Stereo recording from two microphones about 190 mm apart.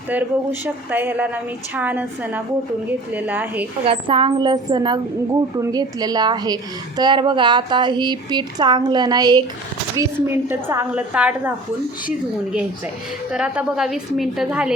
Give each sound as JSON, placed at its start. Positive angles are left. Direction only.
{"t": 0.1, "sound": "a woman's voice", "side_deg": -10}
{"t": 3.8, "sound": "a woman's voice", "side_deg": -30}
{"t": 13.3, "sound": "a woman's voice", "side_deg": -5}